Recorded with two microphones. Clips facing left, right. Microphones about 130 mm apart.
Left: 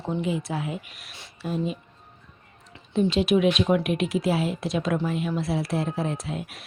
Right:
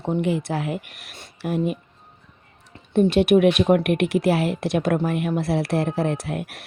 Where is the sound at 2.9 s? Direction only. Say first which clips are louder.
Right 5 dB; 60° right (ahead or behind).